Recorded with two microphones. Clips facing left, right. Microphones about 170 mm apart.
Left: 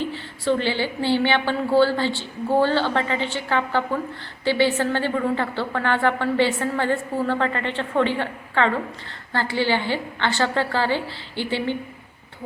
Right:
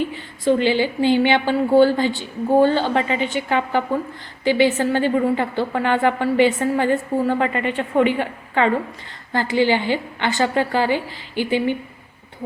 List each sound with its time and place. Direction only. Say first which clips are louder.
0.1 s a woman's voice: right 4 dB; 15° right (ahead or behind)